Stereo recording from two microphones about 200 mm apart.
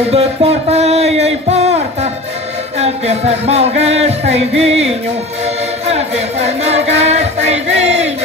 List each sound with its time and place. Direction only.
0.1 s music: 30° right (ahead or behind)
2.8 s music: 30° right (ahead or behind)
5.9 s music: 30° right (ahead or behind)